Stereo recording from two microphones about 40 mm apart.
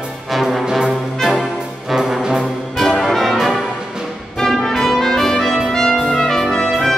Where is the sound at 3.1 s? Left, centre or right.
Centre.